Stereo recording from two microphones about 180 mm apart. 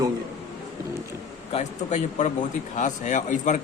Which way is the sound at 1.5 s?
40° left (ahead or behind).